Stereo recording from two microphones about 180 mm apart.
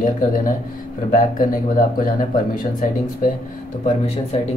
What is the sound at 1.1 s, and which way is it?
Speech, 50° left (ahead or behind).